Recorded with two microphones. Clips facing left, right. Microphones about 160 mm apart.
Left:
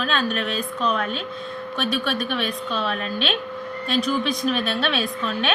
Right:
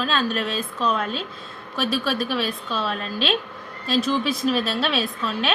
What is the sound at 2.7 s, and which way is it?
Speech, centre (ahead or behind).